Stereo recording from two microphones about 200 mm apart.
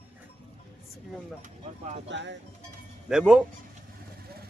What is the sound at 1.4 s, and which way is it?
Speech, 40° right (ahead or behind).